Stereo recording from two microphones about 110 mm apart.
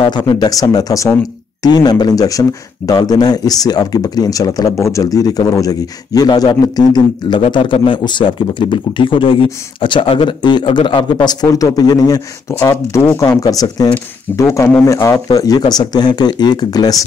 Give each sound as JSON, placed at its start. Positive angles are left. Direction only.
{"t": 0.0, "sound": "a man's voice", "side_deg": 45}